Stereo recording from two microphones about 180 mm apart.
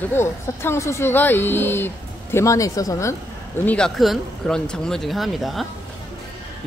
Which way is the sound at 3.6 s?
5° left (ahead or behind).